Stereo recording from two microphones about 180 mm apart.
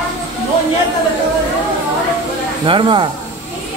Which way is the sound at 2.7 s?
25° right (ahead or behind).